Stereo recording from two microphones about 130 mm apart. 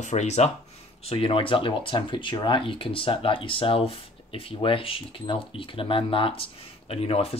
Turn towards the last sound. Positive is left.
turn(degrees=50)  # may be behind; listen again after turning